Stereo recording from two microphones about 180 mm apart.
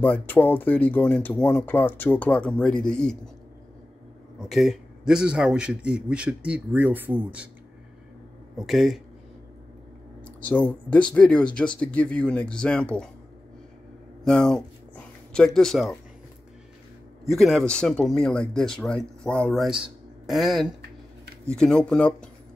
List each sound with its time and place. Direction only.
0.0 s speech: 10° left (ahead or behind)
4.4 s speech: centre (ahead or behind)
8.5 s speech: centre (ahead or behind)
10.4 s speech: 10° left (ahead or behind)
14.2 s speech: 5° left (ahead or behind)
17.3 s speech: centre (ahead or behind)